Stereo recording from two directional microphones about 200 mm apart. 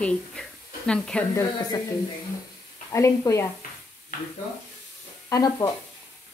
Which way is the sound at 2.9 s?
15° left (ahead or behind).